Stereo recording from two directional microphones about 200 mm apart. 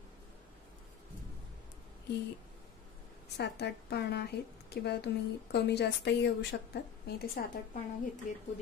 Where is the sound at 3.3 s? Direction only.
55° left (ahead or behind).